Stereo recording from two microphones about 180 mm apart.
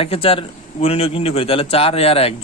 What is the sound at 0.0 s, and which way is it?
A man's voice, 30° left (ahead or behind).